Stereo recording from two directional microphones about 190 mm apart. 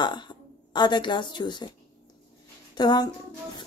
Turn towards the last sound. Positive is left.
turn(degrees=20)  # may be behind; listen again after turning